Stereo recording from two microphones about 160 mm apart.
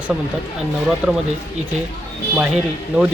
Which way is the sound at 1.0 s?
15° right (ahead or behind).